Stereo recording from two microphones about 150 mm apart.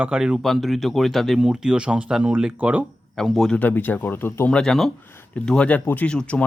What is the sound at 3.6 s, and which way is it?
Speech, 10° left (ahead or behind).